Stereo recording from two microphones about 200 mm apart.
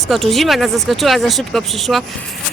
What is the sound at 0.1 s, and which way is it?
A woman's voice, centre (ahead or behind).